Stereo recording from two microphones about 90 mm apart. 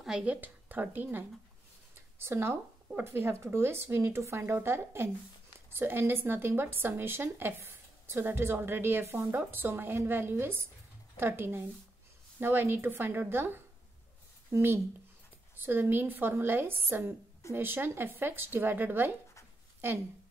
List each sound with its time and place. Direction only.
0.0 s a woman's voice: 10° right (ahead or behind)